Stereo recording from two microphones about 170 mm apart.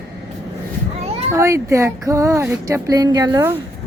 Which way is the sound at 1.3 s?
15° right (ahead or behind).